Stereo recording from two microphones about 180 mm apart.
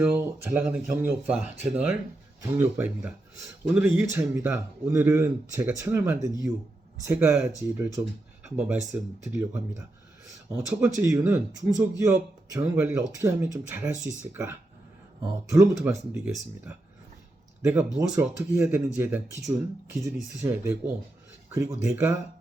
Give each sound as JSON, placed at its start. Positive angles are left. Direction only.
{"t": 0.0, "sound": "speech", "side_deg": -10}